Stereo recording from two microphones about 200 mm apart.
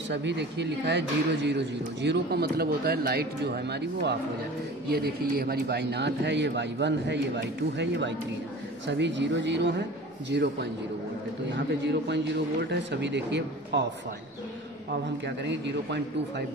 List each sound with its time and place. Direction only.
0.1 s speech: 60° right (ahead or behind)
15.2 s speech: 60° right (ahead or behind)